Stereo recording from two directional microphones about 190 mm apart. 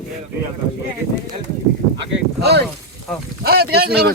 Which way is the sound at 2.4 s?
60° right (ahead or behind).